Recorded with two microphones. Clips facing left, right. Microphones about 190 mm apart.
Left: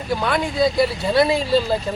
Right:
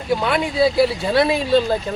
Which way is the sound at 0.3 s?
5° right (ahead or behind).